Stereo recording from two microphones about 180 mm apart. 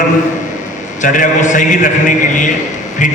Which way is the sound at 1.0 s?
45° left (ahead or behind).